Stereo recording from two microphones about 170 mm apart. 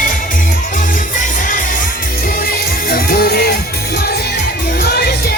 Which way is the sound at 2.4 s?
65° left (ahead or behind).